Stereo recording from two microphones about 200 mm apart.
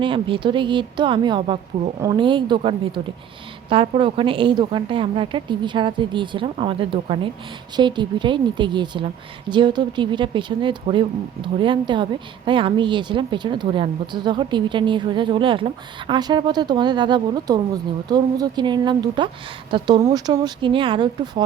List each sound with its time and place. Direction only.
0.0 s a woman's voice: 25° right (ahead or behind)